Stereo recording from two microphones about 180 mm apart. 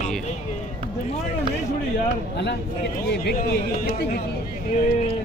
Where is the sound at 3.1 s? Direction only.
60° left (ahead or behind).